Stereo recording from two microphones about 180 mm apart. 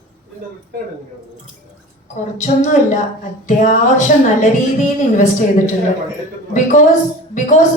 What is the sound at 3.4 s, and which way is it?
A woman's voice, 45° left (ahead or behind).